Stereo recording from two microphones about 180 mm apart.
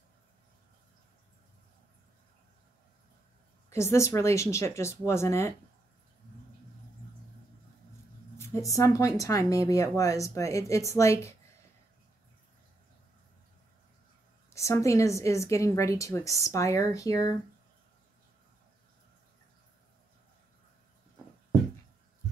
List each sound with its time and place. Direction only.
3.7 s a woman's voice: 15° left (ahead or behind)
8.4 s a woman's voice: 15° left (ahead or behind)
14.5 s a woman's voice: 15° left (ahead or behind)